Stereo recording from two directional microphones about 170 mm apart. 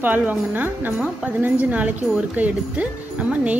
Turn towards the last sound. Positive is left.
turn(degrees=-10)  # may be behind; listen again after turning